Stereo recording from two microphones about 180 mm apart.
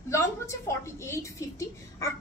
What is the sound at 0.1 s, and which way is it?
A woman's voice, 15° left (ahead or behind).